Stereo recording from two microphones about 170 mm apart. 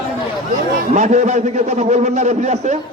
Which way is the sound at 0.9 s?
45° right (ahead or behind).